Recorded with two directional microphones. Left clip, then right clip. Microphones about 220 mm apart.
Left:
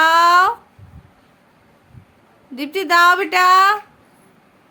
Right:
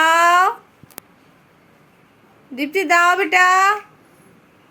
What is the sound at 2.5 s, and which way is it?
A woman's voice, 5° left (ahead or behind).